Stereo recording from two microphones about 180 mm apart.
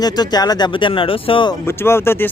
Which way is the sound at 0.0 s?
20° left (ahead or behind).